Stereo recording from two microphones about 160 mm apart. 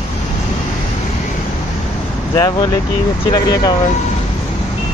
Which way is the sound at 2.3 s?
25° left (ahead or behind).